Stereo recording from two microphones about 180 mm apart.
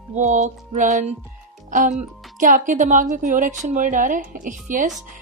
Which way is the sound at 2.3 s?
45° right (ahead or behind).